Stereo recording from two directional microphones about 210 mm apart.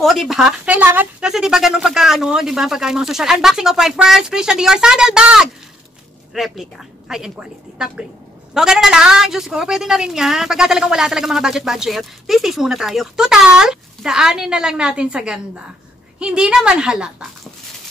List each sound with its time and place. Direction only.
0.0 s a woman's voice: centre (ahead or behind)